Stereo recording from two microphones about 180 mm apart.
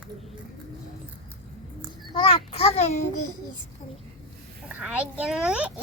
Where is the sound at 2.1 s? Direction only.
30° left (ahead or behind).